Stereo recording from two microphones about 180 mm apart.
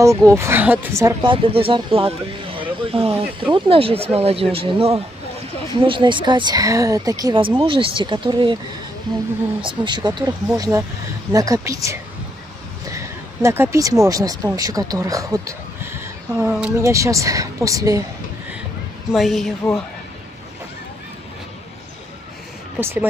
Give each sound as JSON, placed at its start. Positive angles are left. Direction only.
{"t": 0.0, "sound": "speech", "side_deg": -15}
{"t": 1.3, "sound": "speech", "side_deg": -30}
{"t": 9.6, "sound": "speech", "side_deg": -25}
{"t": 19.1, "sound": "a woman's voice", "side_deg": 0}
{"t": 22.8, "sound": "speech", "side_deg": -10}